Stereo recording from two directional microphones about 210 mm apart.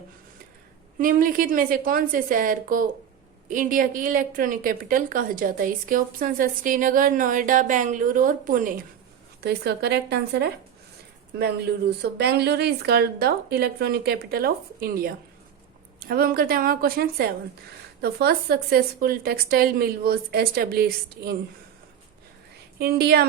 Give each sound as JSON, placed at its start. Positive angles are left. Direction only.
{"t": 0.9, "sound": "a woman's voice", "side_deg": -40}
{"t": 9.4, "sound": "speech", "side_deg": -50}
{"t": 22.8, "sound": "speech", "side_deg": -50}